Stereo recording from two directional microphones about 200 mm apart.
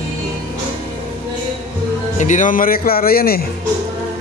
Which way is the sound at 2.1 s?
40° left (ahead or behind).